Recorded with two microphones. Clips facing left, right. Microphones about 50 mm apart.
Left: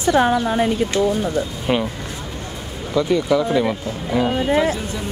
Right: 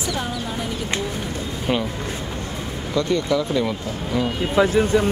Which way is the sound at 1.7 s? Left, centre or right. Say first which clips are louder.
Left 2 dB; centre.